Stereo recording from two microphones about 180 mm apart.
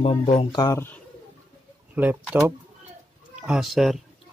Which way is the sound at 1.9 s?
10° right (ahead or behind).